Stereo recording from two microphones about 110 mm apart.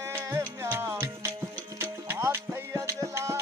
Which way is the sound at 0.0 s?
25° right (ahead or behind).